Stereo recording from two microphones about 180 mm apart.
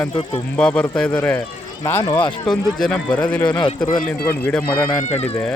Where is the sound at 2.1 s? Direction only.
25° left (ahead or behind).